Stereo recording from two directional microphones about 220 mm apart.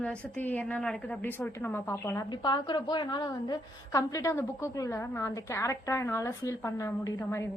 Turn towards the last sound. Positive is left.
turn(degrees=15)  # may be behind; listen again after turning